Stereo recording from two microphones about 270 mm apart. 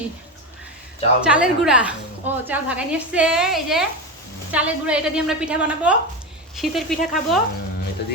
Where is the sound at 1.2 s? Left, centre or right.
Centre.